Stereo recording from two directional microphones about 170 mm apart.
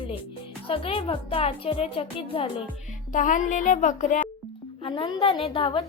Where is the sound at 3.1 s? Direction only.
50° left (ahead or behind).